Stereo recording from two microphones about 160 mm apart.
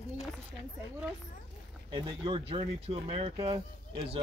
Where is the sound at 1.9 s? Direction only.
35° right (ahead or behind).